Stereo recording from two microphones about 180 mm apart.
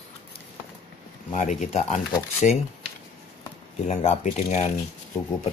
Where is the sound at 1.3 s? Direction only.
40° left (ahead or behind).